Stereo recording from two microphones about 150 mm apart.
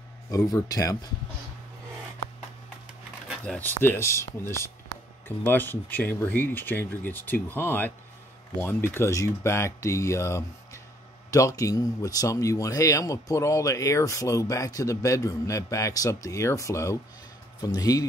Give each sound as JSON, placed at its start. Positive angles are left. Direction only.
{"t": 0.5, "sound": "speech", "side_deg": 25}
{"t": 3.4, "sound": "speech", "side_deg": 10}